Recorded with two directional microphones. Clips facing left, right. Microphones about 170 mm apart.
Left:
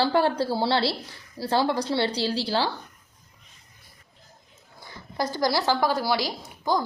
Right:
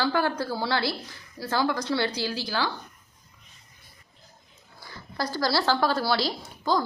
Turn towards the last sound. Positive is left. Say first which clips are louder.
# even
turn(degrees=15)  # may be behind; listen again after turning